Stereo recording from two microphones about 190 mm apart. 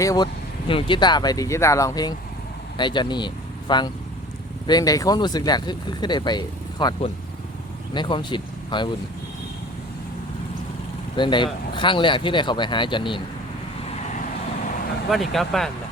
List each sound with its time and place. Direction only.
0.0 s speech: 15° left (ahead or behind)
11.2 s speech: 25° left (ahead or behind)
15.1 s speech: centre (ahead or behind)